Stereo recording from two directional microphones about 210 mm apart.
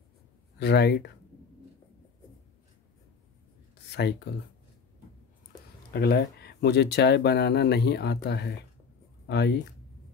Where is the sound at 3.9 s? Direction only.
50° left (ahead or behind).